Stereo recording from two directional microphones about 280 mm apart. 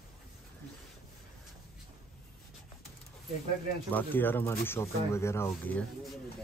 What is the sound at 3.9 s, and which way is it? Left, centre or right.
Speech, centre.